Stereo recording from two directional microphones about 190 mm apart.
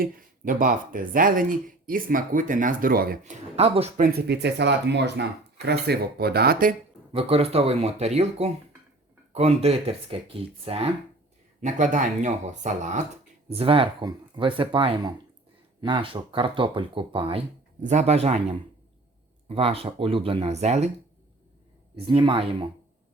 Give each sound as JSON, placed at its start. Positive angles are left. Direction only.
{"t": 0.0, "sound": "speech", "side_deg": -45}
{"t": 3.5, "sound": "speech", "side_deg": -35}
{"t": 4.0, "sound": "speech", "side_deg": -60}
{"t": 7.1, "sound": "speech", "side_deg": -30}
{"t": 11.6, "sound": "speech", "side_deg": -40}
{"t": 21.9, "sound": "speech", "side_deg": -30}